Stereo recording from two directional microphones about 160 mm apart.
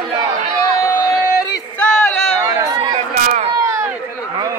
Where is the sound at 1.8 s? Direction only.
5° left (ahead or behind).